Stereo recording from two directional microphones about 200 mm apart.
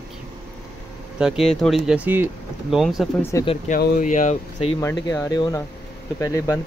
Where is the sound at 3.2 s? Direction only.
15° left (ahead or behind).